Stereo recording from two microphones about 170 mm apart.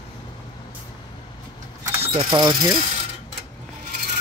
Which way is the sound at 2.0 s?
35° right (ahead or behind).